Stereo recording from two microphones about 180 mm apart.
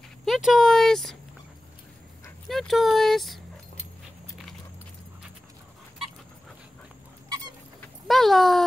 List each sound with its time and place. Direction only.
0.2 s speech: centre (ahead or behind)
2.4 s speech: centre (ahead or behind)
7.2 s squeak: 20° right (ahead or behind)
7.8 s dog: centre (ahead or behind)